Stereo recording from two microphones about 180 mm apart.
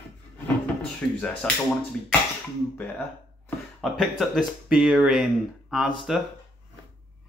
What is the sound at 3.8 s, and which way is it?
Speech, centre (ahead or behind).